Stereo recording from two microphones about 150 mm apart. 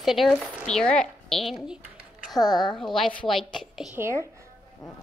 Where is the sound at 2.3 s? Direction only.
25° left (ahead or behind).